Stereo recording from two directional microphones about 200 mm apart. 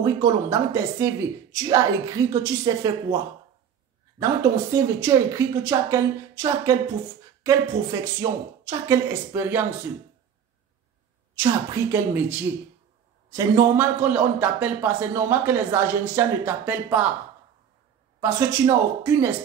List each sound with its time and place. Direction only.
0.0 s a man's voice: 15° right (ahead or behind)
4.2 s a man's voice: 15° right (ahead or behind)
11.3 s a man's voice: 15° right (ahead or behind)
18.2 s a man's voice: 15° right (ahead or behind)